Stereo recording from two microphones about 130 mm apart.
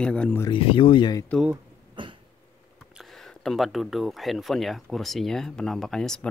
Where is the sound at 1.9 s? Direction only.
40° right (ahead or behind).